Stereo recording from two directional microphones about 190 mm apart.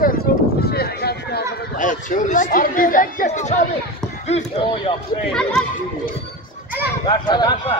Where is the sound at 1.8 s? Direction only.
45° left (ahead or behind).